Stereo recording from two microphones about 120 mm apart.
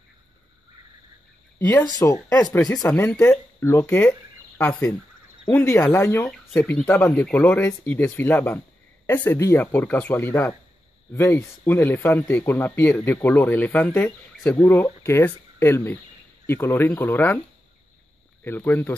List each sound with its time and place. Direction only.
1.6 s speech: 15° left (ahead or behind)
18.4 s speech: 15° left (ahead or behind)